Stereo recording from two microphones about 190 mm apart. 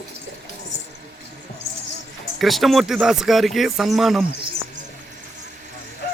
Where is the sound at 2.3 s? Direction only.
Centre (ahead or behind).